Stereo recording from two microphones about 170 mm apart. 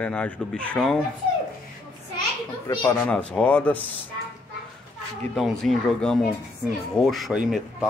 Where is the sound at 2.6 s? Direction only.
20° left (ahead or behind).